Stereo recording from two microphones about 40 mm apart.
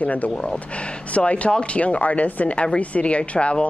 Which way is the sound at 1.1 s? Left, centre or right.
Left.